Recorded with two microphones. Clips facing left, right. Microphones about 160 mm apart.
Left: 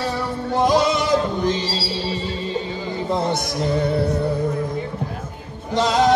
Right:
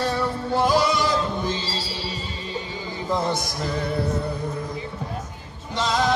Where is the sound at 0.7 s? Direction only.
20° left (ahead or behind).